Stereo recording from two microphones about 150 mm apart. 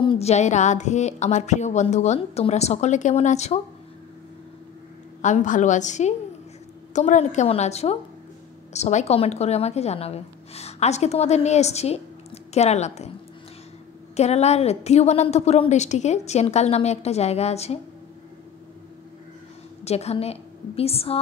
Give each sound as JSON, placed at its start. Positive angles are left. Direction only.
{"t": 0.0, "sound": "a woman's voice", "side_deg": 40}
{"t": 5.2, "sound": "a woman's voice", "side_deg": 55}
{"t": 14.1, "sound": "a woman's voice", "side_deg": 45}
{"t": 19.8, "sound": "a woman's voice", "side_deg": 45}